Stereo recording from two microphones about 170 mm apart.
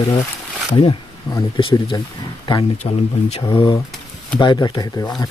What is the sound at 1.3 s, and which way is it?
Speech, 25° left (ahead or behind).